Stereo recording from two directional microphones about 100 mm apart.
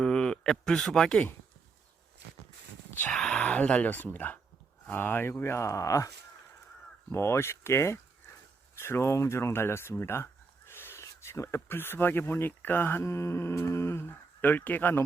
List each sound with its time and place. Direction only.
0.0 s a man's voice: 5° left (ahead or behind)
2.9 s speech: 20° left (ahead or behind)
3.2 s speech: 5° left (ahead or behind); by 6.1 s 35° left (ahead or behind)
7.1 s speech: 25° left (ahead or behind)